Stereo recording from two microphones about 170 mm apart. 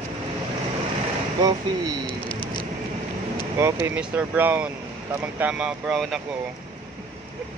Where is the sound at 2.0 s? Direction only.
30° left (ahead or behind).